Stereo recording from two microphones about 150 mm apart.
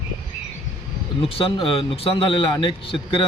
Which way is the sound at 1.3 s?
35° left (ahead or behind).